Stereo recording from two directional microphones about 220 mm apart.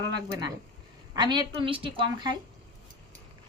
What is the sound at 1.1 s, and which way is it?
Speech, 20° right (ahead or behind).